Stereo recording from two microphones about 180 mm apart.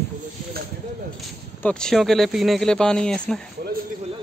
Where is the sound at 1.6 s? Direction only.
5° left (ahead or behind).